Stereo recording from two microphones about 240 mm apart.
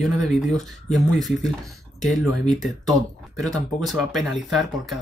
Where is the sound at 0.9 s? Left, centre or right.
Centre.